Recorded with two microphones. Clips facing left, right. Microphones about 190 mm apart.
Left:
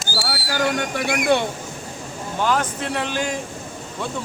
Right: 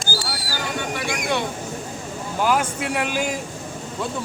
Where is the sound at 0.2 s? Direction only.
60° left (ahead or behind).